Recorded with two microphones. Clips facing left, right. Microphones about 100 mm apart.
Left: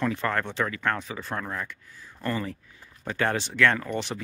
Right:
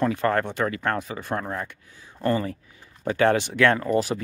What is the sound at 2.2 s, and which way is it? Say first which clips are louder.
Speech: right 6 dB; 50° right (ahead or behind).